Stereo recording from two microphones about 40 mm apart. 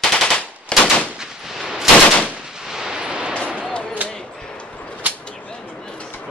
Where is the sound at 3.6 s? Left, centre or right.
Centre.